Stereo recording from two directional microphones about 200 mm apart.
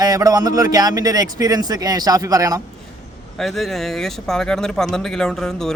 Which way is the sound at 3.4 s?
Centre (ahead or behind).